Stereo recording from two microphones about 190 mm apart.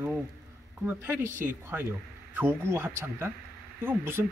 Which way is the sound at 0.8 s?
15° right (ahead or behind).